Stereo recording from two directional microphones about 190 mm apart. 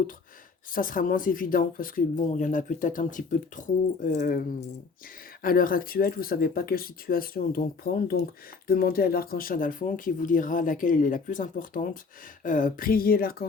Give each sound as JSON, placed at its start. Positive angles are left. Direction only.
{"t": 0.7, "sound": "speech", "side_deg": 45}